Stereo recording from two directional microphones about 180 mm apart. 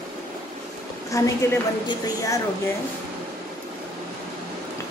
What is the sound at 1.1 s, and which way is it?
A woman's voice, 20° left (ahead or behind).